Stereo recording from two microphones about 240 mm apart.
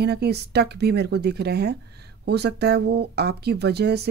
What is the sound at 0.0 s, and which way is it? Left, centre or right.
Speech, right.